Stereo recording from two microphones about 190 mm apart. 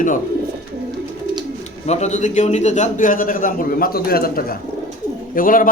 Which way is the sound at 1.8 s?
35° left (ahead or behind).